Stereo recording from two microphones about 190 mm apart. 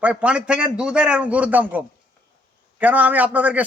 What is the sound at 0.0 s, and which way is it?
A man's voice, 5° right (ahead or behind).